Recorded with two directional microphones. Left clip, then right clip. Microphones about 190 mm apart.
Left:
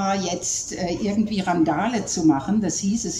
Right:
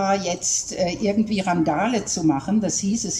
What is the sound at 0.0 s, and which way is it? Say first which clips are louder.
A woman's voice: right 2 dB; 5° right (ahead or behind).